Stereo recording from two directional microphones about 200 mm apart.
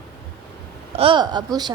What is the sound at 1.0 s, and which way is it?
Speech, 25° right (ahead or behind).